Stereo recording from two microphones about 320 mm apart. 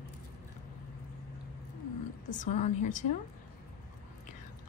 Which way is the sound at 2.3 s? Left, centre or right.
Left.